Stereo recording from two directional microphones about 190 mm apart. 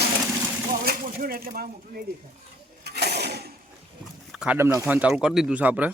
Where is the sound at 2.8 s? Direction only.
60° right (ahead or behind).